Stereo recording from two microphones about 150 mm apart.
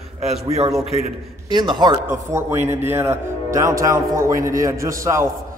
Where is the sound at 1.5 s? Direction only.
30° right (ahead or behind).